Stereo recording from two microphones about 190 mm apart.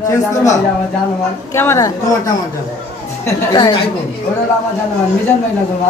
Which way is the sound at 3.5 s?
25° left (ahead or behind).